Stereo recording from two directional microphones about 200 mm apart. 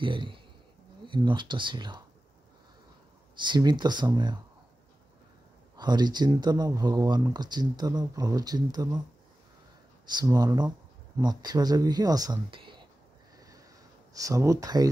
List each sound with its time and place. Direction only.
0.0 s speech: 25° right (ahead or behind)
3.3 s speech: 20° right (ahead or behind)
5.8 s speech: 20° right (ahead or behind)
10.1 s speech: 20° right (ahead or behind)
14.1 s speech: 15° right (ahead or behind)